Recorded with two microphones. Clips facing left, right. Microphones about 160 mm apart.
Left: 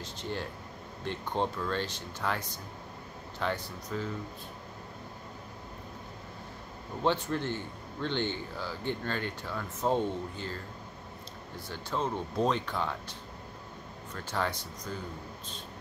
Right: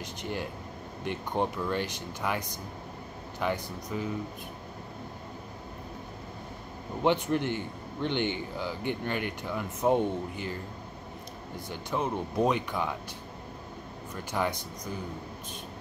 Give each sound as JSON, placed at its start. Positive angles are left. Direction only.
{"t": 0.0, "sound": "a man's voice", "side_deg": -15}
{"t": 7.0, "sound": "a man's voice", "side_deg": -15}
{"t": 11.7, "sound": "a man's voice", "side_deg": -15}
{"t": 14.1, "sound": "a man's voice", "side_deg": -15}